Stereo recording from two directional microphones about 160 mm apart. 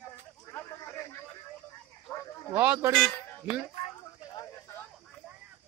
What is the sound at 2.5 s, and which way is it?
Speech, 15° right (ahead or behind).